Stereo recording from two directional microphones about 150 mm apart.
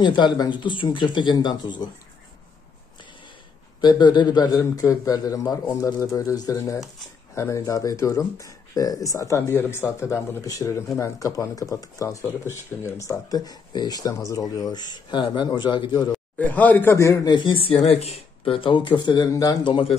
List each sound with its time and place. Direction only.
0.0 s speech: 30° left (ahead or behind)
3.8 s speech: 30° left (ahead or behind)
16.3 s speech: 10° left (ahead or behind); by 20.0 s 35° left (ahead or behind)